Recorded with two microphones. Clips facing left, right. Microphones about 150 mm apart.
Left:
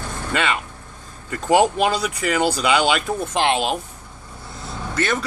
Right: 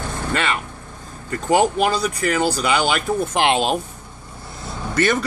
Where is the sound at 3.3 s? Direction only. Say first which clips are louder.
Right 1 dB; 20° right (ahead or behind).